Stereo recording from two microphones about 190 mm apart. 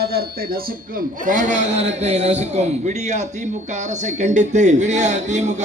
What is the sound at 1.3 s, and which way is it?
Speech, 40° right (ahead or behind).